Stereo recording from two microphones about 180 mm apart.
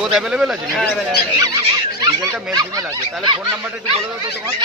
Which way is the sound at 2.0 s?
20° right (ahead or behind).